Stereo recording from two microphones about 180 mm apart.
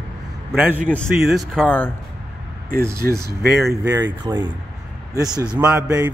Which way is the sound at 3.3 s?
65° right (ahead or behind).